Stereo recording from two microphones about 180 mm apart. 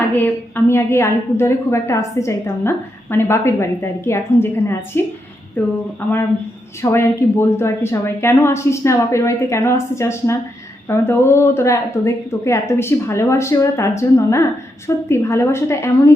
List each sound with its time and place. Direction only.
0.1 s a woman's voice: 10° left (ahead or behind)
6.8 s a woman's voice: 15° left (ahead or behind)